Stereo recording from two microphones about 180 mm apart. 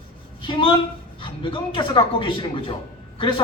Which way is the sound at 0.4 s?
30° left (ahead or behind).